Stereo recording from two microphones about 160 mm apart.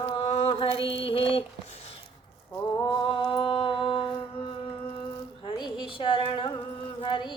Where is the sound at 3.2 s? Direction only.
30° left (ahead or behind).